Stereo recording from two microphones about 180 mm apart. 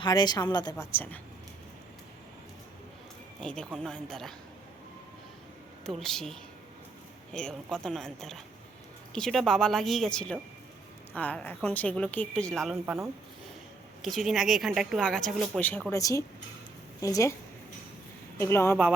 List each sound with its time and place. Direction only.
0.0 s a woman's voice: 25° left (ahead or behind)
3.4 s speech: 5° left (ahead or behind)
5.8 s speech: centre (ahead or behind)
7.3 s speech: 5° left (ahead or behind)
12.7 s speech: 10° right (ahead or behind)
14.0 s speech: centre (ahead or behind); by 17.3 s 20° left (ahead or behind)
18.3 s speech: 15° left (ahead or behind)